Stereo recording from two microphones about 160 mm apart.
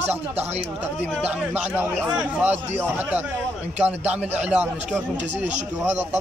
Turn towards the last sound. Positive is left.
turn(degrees=-10)  # may be behind; listen again after turning